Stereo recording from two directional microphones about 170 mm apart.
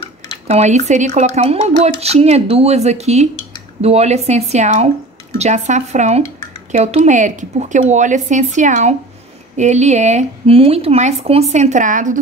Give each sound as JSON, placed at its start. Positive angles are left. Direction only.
{"t": 0.5, "sound": "speech", "side_deg": -40}